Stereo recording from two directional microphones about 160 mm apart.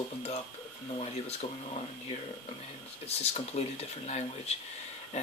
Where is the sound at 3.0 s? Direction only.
40° left (ahead or behind).